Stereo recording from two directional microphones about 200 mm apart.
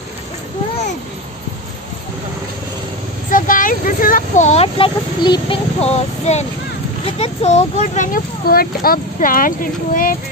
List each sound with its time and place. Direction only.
3.3 s speech: 40° left (ahead or behind)